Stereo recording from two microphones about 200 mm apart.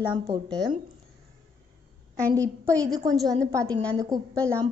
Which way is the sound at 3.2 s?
Centre (ahead or behind).